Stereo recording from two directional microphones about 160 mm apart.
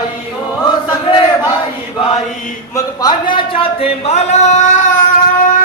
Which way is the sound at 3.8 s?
45° left (ahead or behind).